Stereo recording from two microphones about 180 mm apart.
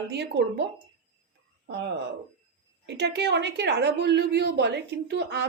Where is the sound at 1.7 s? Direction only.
70° right (ahead or behind).